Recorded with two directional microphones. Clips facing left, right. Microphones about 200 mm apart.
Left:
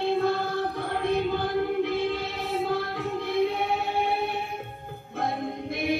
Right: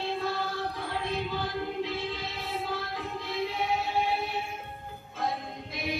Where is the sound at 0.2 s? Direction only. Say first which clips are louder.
Left 6 dB; 60° left (ahead or behind).